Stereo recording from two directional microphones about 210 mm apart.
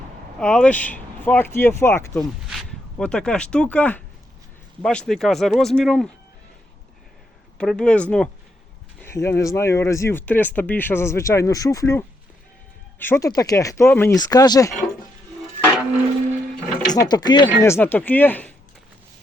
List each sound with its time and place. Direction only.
0.3 s speech: 5° left (ahead or behind)
2.5 s speech: centre (ahead or behind)
7.6 s speech: 5° left (ahead or behind)
16.8 s speech: 20° left (ahead or behind)